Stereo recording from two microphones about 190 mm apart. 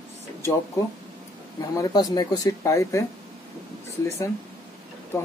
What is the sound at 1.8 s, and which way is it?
Speech, 20° left (ahead or behind).